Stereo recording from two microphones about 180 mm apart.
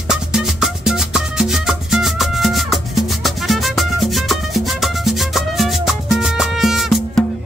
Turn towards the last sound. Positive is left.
turn(degrees=0)  # may be behind; listen again after turning